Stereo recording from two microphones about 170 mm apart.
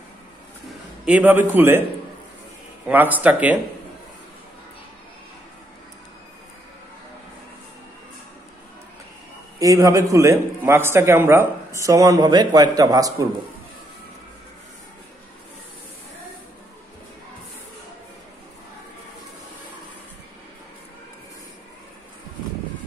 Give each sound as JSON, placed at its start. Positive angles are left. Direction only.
{"t": 0.7, "sound": "a man's voice", "side_deg": -10}
{"t": 2.9, "sound": "speech", "side_deg": -10}
{"t": 9.6, "sound": "a man's voice", "side_deg": -20}